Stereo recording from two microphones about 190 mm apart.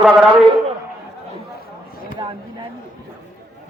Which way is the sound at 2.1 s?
25° right (ahead or behind).